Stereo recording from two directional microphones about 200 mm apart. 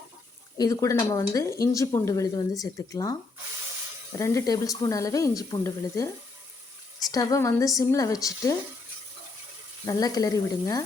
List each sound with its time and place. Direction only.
0.5 s speech: 15° left (ahead or behind)
7.1 s speech: 15° left (ahead or behind)
9.8 s speech: 20° left (ahead or behind)